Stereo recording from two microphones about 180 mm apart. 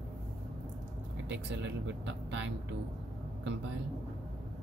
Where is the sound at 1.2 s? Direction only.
90° right.